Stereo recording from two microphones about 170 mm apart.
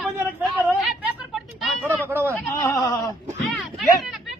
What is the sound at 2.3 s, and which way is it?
Speech, 15° left (ahead or behind).